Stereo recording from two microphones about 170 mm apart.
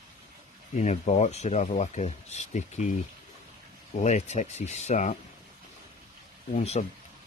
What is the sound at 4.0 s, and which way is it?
Speech, 45° left (ahead or behind).